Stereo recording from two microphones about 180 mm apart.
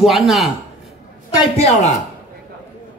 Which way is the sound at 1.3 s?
30° left (ahead or behind).